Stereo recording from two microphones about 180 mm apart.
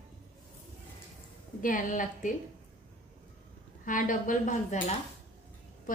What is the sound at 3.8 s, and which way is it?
A woman's voice, 45° left (ahead or behind).